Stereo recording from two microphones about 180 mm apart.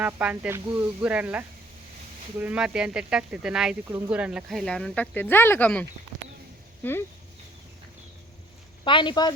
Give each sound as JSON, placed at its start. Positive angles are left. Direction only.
{"t": 0.0, "sound": "speech", "side_deg": -10}
{"t": 3.8, "sound": "speech", "side_deg": -15}
{"t": 6.8, "sound": "speech", "side_deg": 10}
{"t": 8.8, "sound": "speech", "side_deg": 25}